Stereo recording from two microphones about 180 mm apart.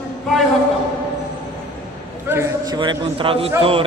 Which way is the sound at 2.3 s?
20° right (ahead or behind).